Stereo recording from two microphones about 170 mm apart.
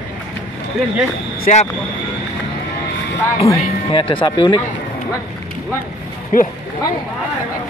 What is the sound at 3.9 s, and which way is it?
Speech, 30° left (ahead or behind).